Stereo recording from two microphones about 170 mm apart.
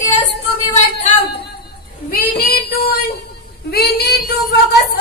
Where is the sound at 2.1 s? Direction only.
60° left (ahead or behind).